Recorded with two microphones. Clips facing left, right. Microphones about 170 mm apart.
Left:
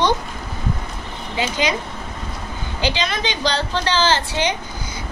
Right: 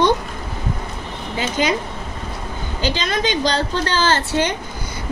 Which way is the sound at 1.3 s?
45° right (ahead or behind).